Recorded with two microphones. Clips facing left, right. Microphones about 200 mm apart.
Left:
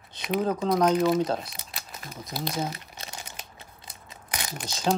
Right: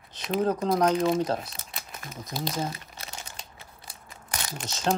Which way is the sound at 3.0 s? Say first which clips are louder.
Left 1 dB; 20° left (ahead or behind).